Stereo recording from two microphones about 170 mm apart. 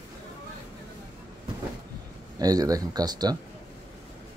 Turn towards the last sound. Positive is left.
turn(degrees=-25)  # may be behind; listen again after turning